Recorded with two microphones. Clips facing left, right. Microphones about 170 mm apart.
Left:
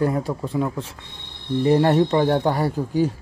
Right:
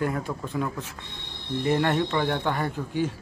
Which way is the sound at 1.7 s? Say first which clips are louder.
Left 7 dB; 40° left (ahead or behind).